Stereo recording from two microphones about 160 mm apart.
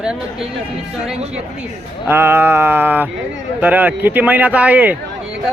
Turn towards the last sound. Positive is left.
turn(degrees=-10)  # may be behind; listen again after turning